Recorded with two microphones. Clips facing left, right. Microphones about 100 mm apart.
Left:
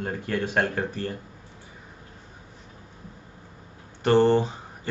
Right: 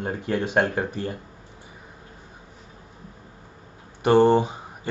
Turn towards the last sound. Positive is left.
turn(degrees=-15)  # may be behind; listen again after turning